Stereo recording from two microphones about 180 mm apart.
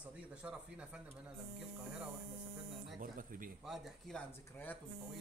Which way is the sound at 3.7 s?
5° left (ahead or behind).